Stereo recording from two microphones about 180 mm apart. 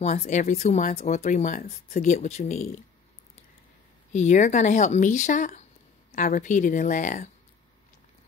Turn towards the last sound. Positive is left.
turn(degrees=45)  # may be behind; listen again after turning